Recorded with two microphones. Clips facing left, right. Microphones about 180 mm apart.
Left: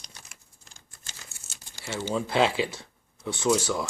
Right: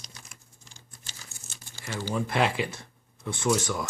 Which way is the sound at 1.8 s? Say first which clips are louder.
Left 1 dB; 20° left (ahead or behind).